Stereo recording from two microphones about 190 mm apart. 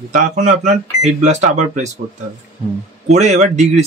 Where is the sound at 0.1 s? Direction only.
40° right (ahead or behind).